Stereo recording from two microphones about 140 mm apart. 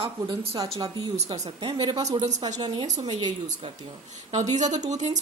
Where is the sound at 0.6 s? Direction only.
25° right (ahead or behind).